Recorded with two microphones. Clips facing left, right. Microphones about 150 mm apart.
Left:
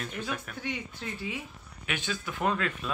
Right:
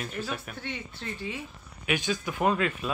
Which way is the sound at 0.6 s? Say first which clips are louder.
Left 1 dB; 10° left (ahead or behind).